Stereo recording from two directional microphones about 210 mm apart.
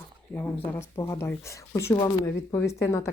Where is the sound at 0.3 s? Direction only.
10° left (ahead or behind).